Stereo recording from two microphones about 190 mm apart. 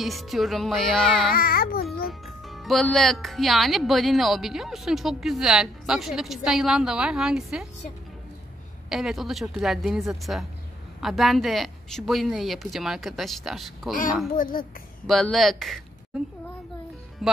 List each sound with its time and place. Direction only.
0.0 s speech: centre (ahead or behind)
1.3 s music: 50° left (ahead or behind)
2.2 s speech: centre (ahead or behind)
8.8 s speech: centre (ahead or behind)
14.3 s music: 45° left (ahead or behind)
15.0 s speech: centre (ahead or behind)
17.2 s speech: centre (ahead or behind)